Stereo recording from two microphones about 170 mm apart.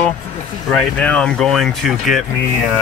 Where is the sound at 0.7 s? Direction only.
5° left (ahead or behind).